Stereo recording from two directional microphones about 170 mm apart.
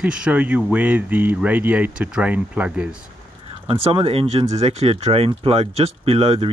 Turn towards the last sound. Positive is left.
turn(degrees=-35)  # may be behind; listen again after turning